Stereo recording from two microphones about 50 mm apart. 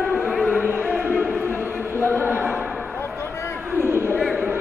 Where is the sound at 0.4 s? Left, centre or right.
Centre.